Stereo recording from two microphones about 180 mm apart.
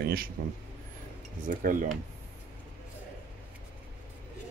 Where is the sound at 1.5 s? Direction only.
50° right (ahead or behind).